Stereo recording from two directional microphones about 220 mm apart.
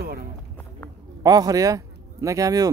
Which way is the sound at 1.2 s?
15° right (ahead or behind).